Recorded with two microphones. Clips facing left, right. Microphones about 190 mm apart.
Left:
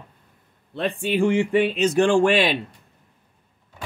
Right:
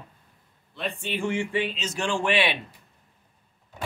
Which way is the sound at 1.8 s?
55° left (ahead or behind).